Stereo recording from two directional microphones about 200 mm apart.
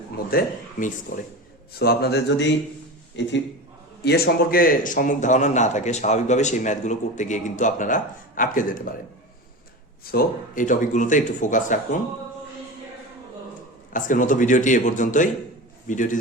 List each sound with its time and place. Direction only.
0.3 s speech: 45° left (ahead or behind)
1.8 s a man's voice: 55° left (ahead or behind)
4.0 s a man's voice: 50° left (ahead or behind)
10.0 s a man's voice: 50° left (ahead or behind)
13.9 s a man's voice: 40° left (ahead or behind)